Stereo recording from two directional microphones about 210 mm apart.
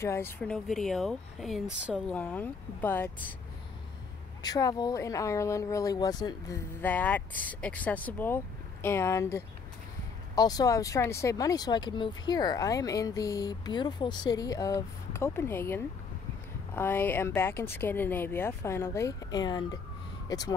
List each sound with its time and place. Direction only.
0.0 s speech: 10° left (ahead or behind)
4.4 s speech: 20° left (ahead or behind)